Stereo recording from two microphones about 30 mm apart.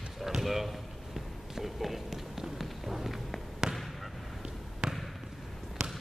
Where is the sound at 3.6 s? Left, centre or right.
Right.